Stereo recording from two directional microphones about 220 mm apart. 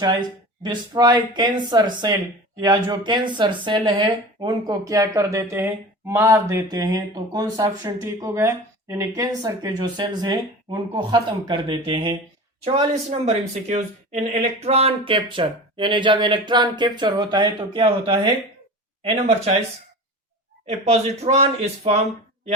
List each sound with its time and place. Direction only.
0.0 s speech: 20° right (ahead or behind)
20.7 s speech: 30° right (ahead or behind)